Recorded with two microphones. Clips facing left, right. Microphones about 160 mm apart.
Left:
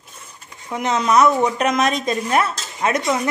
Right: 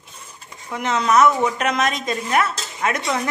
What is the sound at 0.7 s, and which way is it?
A woman's voice, 15° left (ahead or behind).